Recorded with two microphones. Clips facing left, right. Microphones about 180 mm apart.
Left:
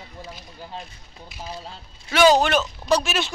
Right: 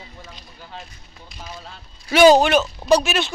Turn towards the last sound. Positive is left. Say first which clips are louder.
# right 3 dB
turn(degrees=0)  # may be behind; listen again after turning